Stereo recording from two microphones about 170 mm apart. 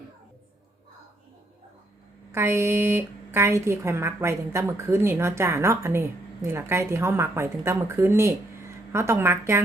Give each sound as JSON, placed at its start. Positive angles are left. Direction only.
{"t": 2.3, "sound": "a woman's voice", "side_deg": -15}